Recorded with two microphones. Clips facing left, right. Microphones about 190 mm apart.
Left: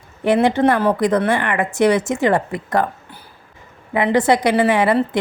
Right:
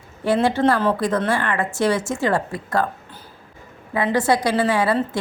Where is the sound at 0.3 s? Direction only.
20° left (ahead or behind).